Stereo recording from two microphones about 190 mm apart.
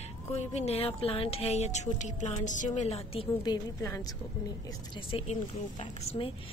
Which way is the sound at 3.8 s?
15° left (ahead or behind).